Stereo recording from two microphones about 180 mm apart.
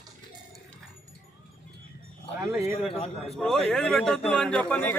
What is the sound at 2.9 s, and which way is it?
Speech, 35° left (ahead or behind).